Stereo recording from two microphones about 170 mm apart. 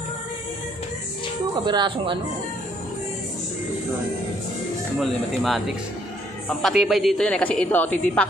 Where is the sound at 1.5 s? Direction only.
25° right (ahead or behind).